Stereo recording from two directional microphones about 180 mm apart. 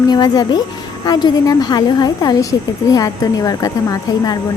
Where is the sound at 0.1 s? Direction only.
20° left (ahead or behind).